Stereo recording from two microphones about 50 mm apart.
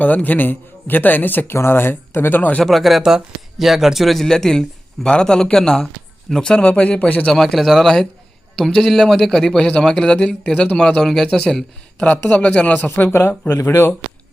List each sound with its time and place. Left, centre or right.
0.0 s a man's voice: left
1.5 s speech: left
2.6 s a man's voice: centre
6.6 s a man's voice: left
7.3 s a man's voice: centre
12.3 s a man's voice: left
12.7 s a man's voice: left
13.6 s speech: left